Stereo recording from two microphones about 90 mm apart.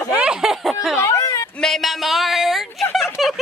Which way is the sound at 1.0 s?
40° left (ahead or behind).